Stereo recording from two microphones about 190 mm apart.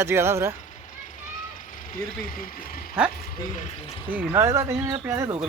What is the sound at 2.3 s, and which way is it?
Speech, 50° left (ahead or behind).